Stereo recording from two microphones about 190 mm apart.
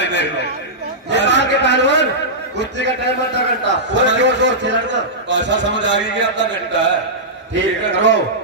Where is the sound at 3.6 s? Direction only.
70° right (ahead or behind).